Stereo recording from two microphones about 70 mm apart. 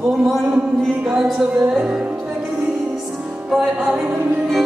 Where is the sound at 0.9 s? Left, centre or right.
Centre.